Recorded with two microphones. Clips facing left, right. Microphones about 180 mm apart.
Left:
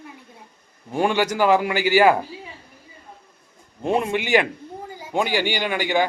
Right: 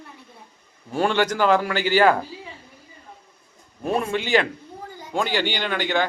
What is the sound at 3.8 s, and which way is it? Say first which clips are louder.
A child's voice: left 2 dB; 20° left (ahead or behind).